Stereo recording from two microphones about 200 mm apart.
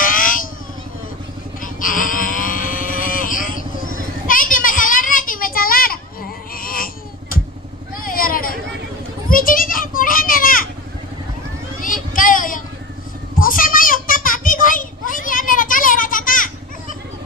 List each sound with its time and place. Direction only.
0.0 s vehicle: 45° left (ahead or behind)
1.6 s music: 45° left (ahead or behind)
6.5 s a sound: 45° left (ahead or behind)
8.0 s vehicle: 45° left (ahead or behind)
9.3 s children playing: 45° left (ahead or behind)
11.8 s a sound: 45° left (ahead or behind)